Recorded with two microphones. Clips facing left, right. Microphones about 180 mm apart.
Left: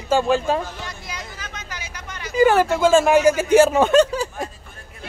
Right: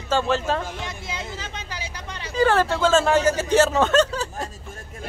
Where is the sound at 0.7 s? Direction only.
20° right (ahead or behind).